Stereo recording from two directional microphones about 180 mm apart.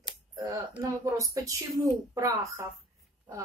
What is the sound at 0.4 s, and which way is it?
A woman's voice, 20° right (ahead or behind).